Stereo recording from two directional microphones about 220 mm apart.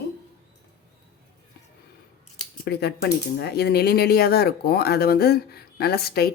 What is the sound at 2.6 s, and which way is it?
Speech, 45° left (ahead or behind).